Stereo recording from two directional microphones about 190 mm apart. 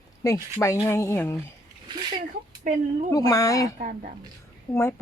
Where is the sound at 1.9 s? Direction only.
25° right (ahead or behind).